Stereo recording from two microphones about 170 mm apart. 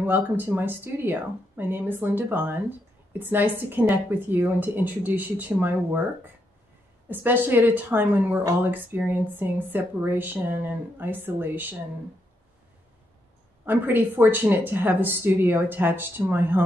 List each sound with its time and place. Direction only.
0.0 s a woman's voice: 10° right (ahead or behind)
13.7 s a woman's voice: 10° right (ahead or behind)